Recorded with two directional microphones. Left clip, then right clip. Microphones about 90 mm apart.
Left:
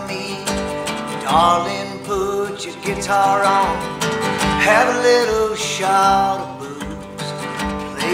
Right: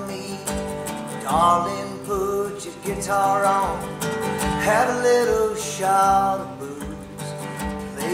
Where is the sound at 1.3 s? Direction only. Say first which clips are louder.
Left 4 dB; 20° left (ahead or behind).